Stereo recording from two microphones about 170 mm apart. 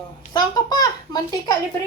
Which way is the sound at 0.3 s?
25° left (ahead or behind).